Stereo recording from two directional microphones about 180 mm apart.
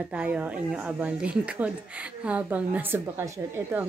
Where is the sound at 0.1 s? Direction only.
5° right (ahead or behind).